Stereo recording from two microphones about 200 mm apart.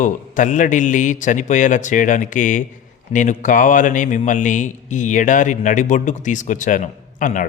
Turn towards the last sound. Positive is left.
turn(degrees=40)  # may be behind; listen again after turning